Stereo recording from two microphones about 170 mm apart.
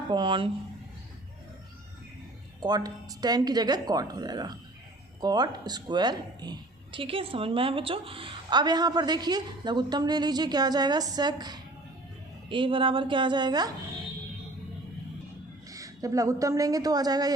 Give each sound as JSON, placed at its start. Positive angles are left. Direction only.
{"t": 0.1, "sound": "a woman's voice", "side_deg": -30}
{"t": 2.6, "sound": "a woman's voice", "side_deg": -25}
{"t": 15.7, "sound": "a woman's voice", "side_deg": -20}